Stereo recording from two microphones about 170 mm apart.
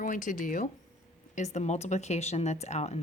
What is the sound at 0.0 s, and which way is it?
Speech, 50° left (ahead or behind).